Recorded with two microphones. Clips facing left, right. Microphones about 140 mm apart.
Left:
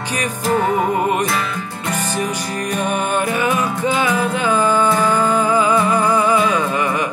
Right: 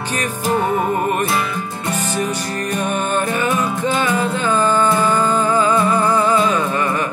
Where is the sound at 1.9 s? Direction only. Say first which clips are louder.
Even; 15° right (ahead or behind).